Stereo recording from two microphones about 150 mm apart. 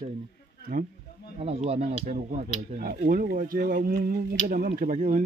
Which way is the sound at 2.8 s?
70° right (ahead or behind).